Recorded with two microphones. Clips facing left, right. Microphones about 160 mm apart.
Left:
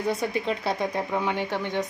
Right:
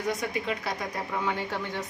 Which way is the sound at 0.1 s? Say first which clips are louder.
Left 4 dB; 30° left (ahead or behind).